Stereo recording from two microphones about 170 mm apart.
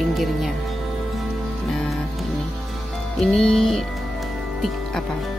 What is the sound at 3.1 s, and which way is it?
Speech, centre (ahead or behind).